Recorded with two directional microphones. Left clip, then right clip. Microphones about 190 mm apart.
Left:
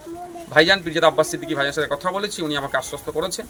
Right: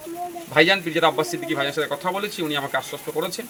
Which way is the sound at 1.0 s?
30° left (ahead or behind).